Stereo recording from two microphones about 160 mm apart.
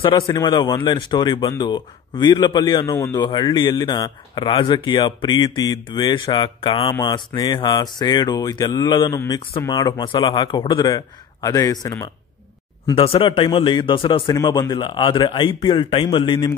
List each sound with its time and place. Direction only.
0.0 s speech: 25° left (ahead or behind)
12.8 s speech: 35° left (ahead or behind)